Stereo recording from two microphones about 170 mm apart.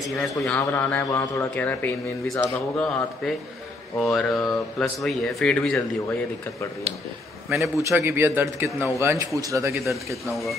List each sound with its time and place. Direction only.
0.2 s a man's voice: 5° left (ahead or behind)
7.9 s a man's voice: 15° right (ahead or behind)